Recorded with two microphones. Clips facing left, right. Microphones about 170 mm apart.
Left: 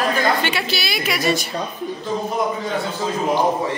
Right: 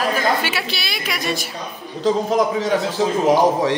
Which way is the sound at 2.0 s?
90° right.